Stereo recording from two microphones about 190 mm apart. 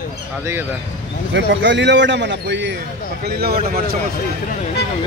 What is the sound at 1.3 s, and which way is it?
A man's voice, 70° right (ahead or behind).